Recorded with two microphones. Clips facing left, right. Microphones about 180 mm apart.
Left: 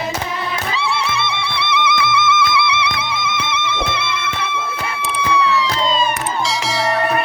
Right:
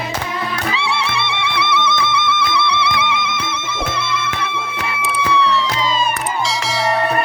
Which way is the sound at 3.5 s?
65° left (ahead or behind).